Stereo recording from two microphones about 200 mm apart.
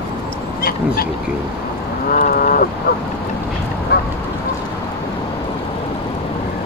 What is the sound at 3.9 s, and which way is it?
Duck, 55° left (ahead or behind).